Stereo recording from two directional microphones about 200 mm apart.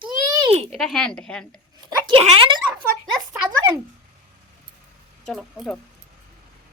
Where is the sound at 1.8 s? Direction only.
25° right (ahead or behind).